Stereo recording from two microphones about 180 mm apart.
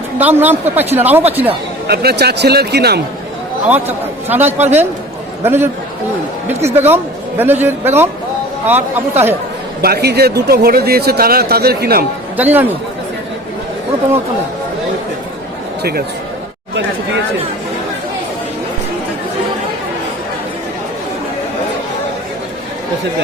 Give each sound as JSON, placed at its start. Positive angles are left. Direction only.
{"t": 0.2, "sound": "a woman's voice", "side_deg": -10}
{"t": 1.9, "sound": "speech", "side_deg": -60}
{"t": 3.7, "sound": "a woman's voice", "side_deg": -10}
{"t": 6.7, "sound": "a woman's voice", "side_deg": -10}
{"t": 9.8, "sound": "speech", "side_deg": -60}
{"t": 12.4, "sound": "a woman's voice", "side_deg": -10}
{"t": 15.8, "sound": "speech", "side_deg": -60}